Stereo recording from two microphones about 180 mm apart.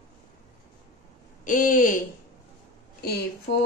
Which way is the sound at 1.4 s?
45° left (ahead or behind).